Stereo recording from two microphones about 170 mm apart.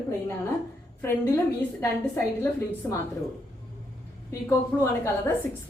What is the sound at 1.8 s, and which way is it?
A woman's voice, 10° left (ahead or behind).